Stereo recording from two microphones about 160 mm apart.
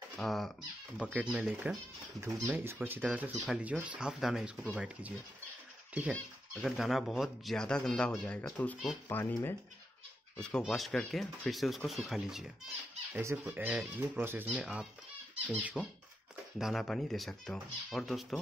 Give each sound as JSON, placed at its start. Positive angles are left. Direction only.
{"t": 0.1, "sound": "speech", "side_deg": 0}
{"t": 6.5, "sound": "speech", "side_deg": 0}
{"t": 10.4, "sound": "speech", "side_deg": 5}
{"t": 13.1, "sound": "speech", "side_deg": -15}
{"t": 13.4, "sound": "speech", "side_deg": -5}